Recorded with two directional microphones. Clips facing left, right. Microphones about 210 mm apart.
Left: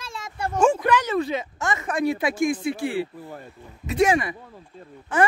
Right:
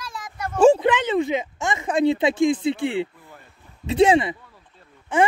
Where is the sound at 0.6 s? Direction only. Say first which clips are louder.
Right 6 dB; 35° right (ahead or behind).